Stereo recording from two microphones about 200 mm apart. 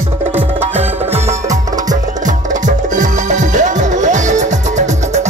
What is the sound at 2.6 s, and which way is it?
Music, 40° right (ahead or behind).